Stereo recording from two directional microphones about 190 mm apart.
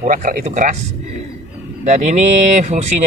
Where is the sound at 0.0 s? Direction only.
45° right (ahead or behind).